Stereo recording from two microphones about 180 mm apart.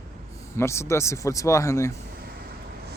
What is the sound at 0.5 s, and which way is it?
Speech, 15° left (ahead or behind).